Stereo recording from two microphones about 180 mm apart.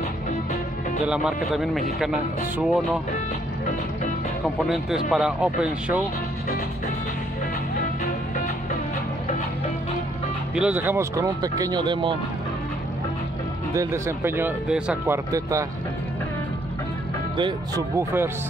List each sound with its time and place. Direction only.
1.0 s speech: 5° right (ahead or behind)
5.1 s speech: 5° right (ahead or behind)
10.5 s speech: 5° right (ahead or behind); by 12.2 s 25° right (ahead or behind)
13.7 s speech: 15° right (ahead or behind)
17.4 s speech: 25° right (ahead or behind)
17.9 s speech: 15° right (ahead or behind)